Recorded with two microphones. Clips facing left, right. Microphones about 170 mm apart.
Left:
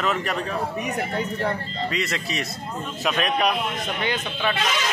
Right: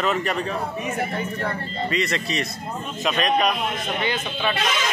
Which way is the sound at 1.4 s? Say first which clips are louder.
Left 1 dB; centre (ahead or behind).